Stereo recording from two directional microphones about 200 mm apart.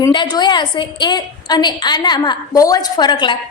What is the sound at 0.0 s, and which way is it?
A woman's voice, 20° left (ahead or behind).